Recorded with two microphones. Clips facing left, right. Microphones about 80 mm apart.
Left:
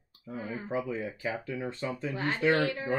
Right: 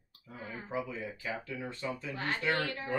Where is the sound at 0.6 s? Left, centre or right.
Left.